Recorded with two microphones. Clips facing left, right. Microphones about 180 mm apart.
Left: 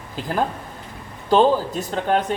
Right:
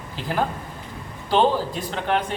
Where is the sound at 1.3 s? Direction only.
45° left (ahead or behind).